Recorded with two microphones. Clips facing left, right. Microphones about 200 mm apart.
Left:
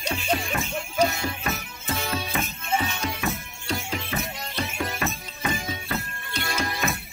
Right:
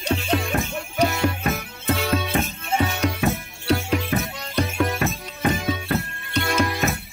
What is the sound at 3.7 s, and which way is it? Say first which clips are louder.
Music: right 8 dB; 60° right (ahead or behind).